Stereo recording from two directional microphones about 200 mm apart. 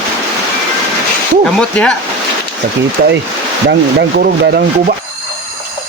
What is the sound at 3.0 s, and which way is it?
Speech, 45° right (ahead or behind).